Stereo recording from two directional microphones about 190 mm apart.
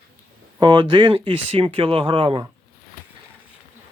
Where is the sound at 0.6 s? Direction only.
25° right (ahead or behind).